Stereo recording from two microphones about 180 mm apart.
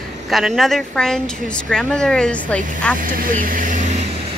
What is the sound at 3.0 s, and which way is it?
Speech, 50° right (ahead or behind).